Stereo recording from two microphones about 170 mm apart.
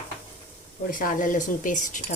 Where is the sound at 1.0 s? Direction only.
55° left (ahead or behind).